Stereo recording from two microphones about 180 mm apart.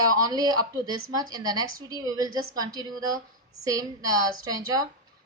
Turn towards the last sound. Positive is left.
turn(degrees=-20)  # may be behind; listen again after turning